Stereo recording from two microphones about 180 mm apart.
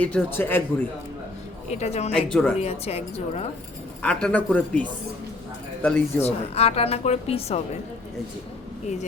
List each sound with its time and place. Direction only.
0.0 s speech: 10° left (ahead or behind)
1.7 s speech: 35° left (ahead or behind)
2.1 s speech: 5° left (ahead or behind)
2.6 s speech: 35° left (ahead or behind)
4.0 s speech: 5° left (ahead or behind)
6.2 s speech: 35° left (ahead or behind)